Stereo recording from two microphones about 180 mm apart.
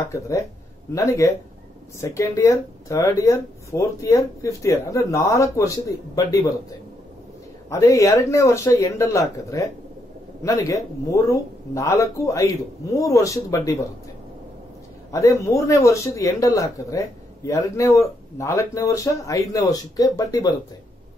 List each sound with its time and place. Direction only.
0.1 s speech: 15° left (ahead or behind)
7.7 s speech: 15° left (ahead or behind)
15.0 s speech: 15° left (ahead or behind)